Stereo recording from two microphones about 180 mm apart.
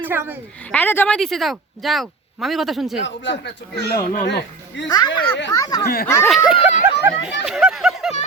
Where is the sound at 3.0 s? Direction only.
85° left.